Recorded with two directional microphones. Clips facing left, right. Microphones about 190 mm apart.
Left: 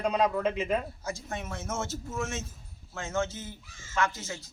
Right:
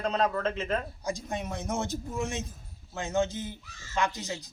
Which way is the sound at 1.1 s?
15° right (ahead or behind).